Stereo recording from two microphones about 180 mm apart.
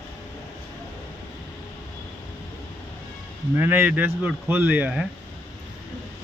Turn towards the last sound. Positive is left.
turn(degrees=-5)  # may be behind; listen again after turning